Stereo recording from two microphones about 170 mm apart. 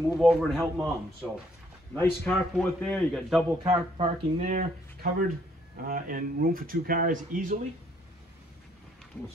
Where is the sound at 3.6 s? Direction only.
35° right (ahead or behind).